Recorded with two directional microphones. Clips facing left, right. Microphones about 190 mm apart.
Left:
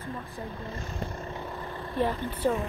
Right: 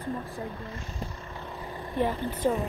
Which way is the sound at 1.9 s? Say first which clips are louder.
Right 1 dB; 10° right (ahead or behind).